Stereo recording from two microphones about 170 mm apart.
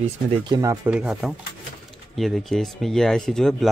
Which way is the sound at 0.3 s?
25° right (ahead or behind).